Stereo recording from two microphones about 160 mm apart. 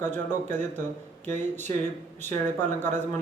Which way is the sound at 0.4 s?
50° right (ahead or behind).